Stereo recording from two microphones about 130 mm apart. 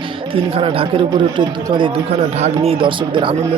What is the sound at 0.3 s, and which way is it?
Speech, 45° right (ahead or behind).